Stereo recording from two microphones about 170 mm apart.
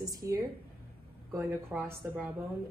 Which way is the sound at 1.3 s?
15° right (ahead or behind).